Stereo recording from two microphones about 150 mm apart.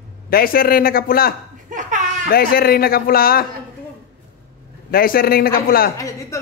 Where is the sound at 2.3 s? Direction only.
80° left.